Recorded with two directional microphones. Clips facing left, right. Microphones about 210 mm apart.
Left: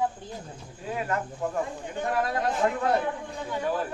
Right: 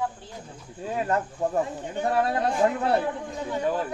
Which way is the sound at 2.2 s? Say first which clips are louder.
Right 3 dB; 30° right (ahead or behind).